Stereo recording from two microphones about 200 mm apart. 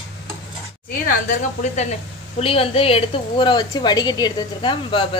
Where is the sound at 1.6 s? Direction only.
35° left (ahead or behind).